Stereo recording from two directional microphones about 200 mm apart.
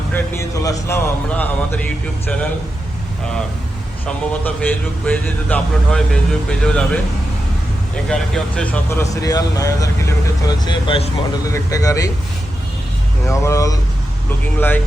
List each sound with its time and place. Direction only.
0.1 s a man's voice: 15° left (ahead or behind)
4.0 s a man's voice: 5° left (ahead or behind)
8.1 s a man's voice: 5° left (ahead or behind)
13.2 s a man's voice: 15° left (ahead or behind)